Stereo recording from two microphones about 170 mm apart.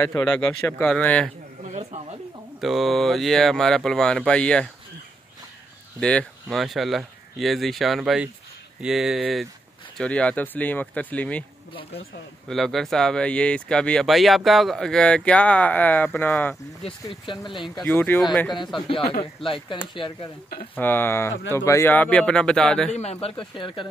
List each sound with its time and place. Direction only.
0.0 s speech: 10° left (ahead or behind)
1.6 s a sound: 40° right (ahead or behind)
2.6 s speech: centre (ahead or behind)
5.9 s speech: 5° left (ahead or behind)
12.4 s speech: centre (ahead or behind)
17.1 s speech: 30° left (ahead or behind)
17.8 s speech: 10° left (ahead or behind)
19.4 s speech: 30° left (ahead or behind)
20.7 s speech: 10° left (ahead or behind)
23.5 s speech: 30° left (ahead or behind)